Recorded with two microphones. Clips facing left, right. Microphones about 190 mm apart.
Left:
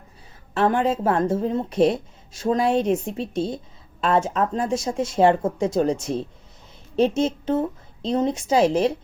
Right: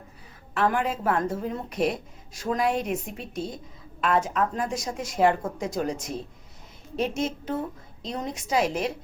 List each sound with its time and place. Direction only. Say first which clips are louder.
0.5 s speech: left 5 dB; 25° left (ahead or behind)